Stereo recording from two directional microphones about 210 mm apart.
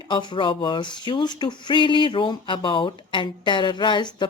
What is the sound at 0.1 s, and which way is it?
A woman's voice, 20° left (ahead or behind).